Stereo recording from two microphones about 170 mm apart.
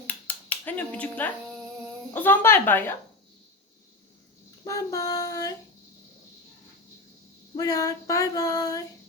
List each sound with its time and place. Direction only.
0.1 s a sound: 10° left (ahead or behind)
2.1 s speech: 10° left (ahead or behind)
4.6 s female singing: 20° left (ahead or behind)
7.5 s female singing: 20° left (ahead or behind)